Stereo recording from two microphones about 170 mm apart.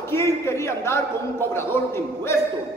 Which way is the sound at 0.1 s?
15° left (ahead or behind).